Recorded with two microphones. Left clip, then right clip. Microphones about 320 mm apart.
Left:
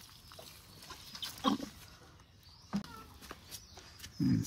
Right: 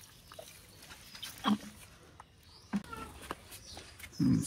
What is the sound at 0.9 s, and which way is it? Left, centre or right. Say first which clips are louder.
Goat: left 3 dB; left.